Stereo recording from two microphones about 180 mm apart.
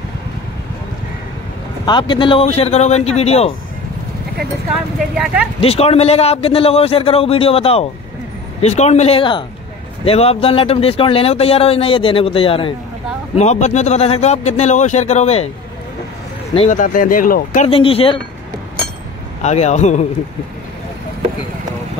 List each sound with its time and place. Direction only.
1.9 s speech: 25° left (ahead or behind)
5.1 s speech: 5° right (ahead or behind)
5.6 s speech: 35° left (ahead or behind)
16.5 s speech: 45° left (ahead or behind)
17.6 s speech: 30° left (ahead or behind)
19.4 s speech: 40° left (ahead or behind)